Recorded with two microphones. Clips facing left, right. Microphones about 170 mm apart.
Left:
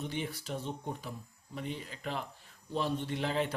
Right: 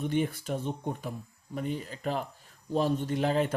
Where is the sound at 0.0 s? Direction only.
50° right (ahead or behind).